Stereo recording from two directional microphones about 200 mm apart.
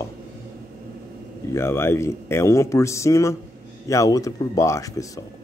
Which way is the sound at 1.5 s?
15° left (ahead or behind).